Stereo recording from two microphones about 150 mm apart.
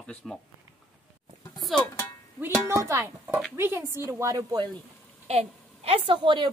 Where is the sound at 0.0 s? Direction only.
5° left (ahead or behind).